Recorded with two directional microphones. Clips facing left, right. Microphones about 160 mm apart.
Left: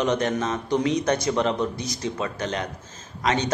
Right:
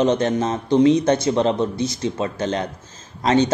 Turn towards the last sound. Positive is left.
turn(degrees=-30)  # may be behind; listen again after turning